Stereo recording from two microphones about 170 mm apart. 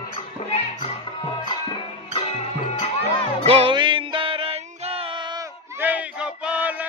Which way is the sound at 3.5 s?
30° right (ahead or behind).